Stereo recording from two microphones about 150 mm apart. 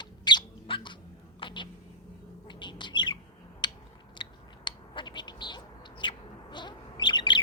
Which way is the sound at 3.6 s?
30° left (ahead or behind).